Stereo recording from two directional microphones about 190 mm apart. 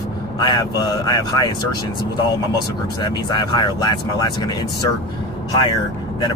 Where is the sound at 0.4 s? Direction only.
25° left (ahead or behind).